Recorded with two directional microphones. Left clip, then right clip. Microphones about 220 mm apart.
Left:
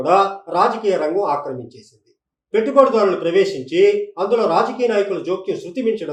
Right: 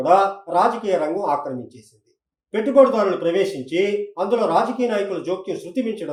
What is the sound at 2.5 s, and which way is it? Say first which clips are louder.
Speech: left 1 dB; 30° right (ahead or behind).